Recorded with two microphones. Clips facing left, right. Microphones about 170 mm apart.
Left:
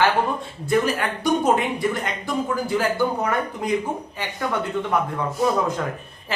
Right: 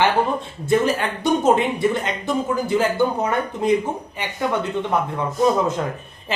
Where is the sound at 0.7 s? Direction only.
25° right (ahead or behind).